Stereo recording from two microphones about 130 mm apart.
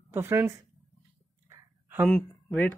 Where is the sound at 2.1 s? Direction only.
10° left (ahead or behind).